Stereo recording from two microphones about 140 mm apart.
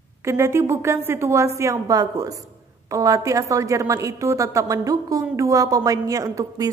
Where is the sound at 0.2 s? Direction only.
20° right (ahead or behind).